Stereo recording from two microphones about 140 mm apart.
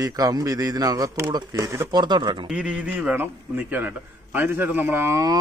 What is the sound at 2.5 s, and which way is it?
A man's voice, 10° right (ahead or behind).